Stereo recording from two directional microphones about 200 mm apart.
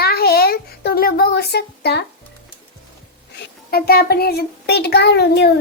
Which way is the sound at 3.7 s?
50° left (ahead or behind).